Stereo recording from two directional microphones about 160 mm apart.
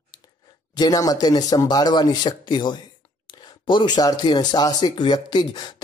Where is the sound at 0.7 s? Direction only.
25° left (ahead or behind).